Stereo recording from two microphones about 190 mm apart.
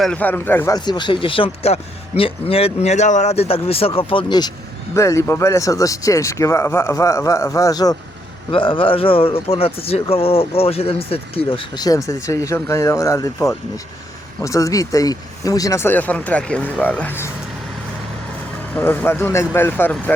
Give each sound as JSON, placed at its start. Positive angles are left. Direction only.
{"t": 0.0, "sound": "speech", "side_deg": 5}
{"t": 14.3, "sound": "speech", "side_deg": 15}
{"t": 18.7, "sound": "speech", "side_deg": 10}